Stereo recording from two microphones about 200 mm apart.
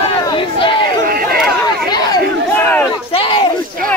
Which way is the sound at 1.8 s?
15° left (ahead or behind).